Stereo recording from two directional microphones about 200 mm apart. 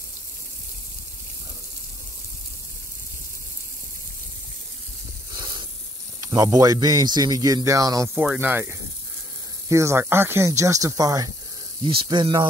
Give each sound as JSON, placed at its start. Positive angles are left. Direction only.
{"t": 5.4, "sound": "snake", "side_deg": -20}
{"t": 6.3, "sound": "speech", "side_deg": -20}
{"t": 8.1, "sound": "speech", "side_deg": -5}